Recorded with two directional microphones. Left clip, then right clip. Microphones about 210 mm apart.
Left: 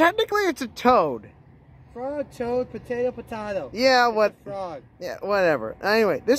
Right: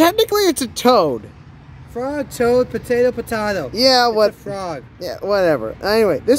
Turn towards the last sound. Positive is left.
turn(degrees=5)  # may be behind; listen again after turning